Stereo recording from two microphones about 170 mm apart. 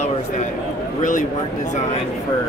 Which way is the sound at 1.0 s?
50° left (ahead or behind).